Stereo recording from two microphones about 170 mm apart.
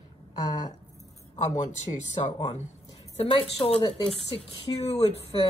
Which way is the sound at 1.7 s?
40° left (ahead or behind).